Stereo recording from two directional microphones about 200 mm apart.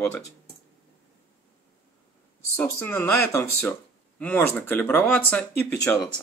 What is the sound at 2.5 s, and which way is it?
Speech, 10° left (ahead or behind).